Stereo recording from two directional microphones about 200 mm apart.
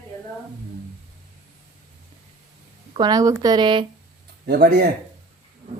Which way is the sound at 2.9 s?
20° right (ahead or behind).